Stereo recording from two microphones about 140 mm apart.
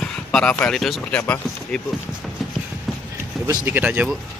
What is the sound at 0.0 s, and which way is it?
Speech, 5° left (ahead or behind).